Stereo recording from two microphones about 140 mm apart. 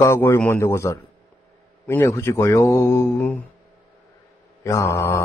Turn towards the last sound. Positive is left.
turn(degrees=20)  # may be behind; listen again after turning